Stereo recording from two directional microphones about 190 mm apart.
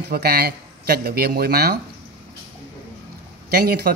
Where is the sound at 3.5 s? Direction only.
55° right (ahead or behind).